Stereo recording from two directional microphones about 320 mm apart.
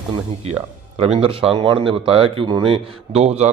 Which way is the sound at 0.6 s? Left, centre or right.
Centre.